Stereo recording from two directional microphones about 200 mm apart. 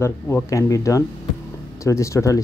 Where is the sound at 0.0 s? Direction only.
15° left (ahead or behind).